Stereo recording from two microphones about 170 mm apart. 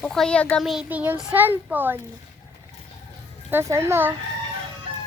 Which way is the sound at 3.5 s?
15° right (ahead or behind).